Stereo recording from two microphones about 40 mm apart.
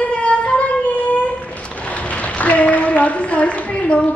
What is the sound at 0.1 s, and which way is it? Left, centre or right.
Music, left.